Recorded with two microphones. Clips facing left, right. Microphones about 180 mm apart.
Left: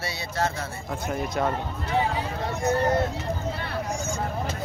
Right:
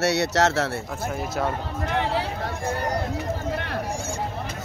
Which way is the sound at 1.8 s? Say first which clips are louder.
Right 1 dB; 75° right (ahead or behind).